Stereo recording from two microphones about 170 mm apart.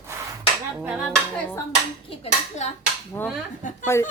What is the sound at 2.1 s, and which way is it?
Speech, 40° left (ahead or behind).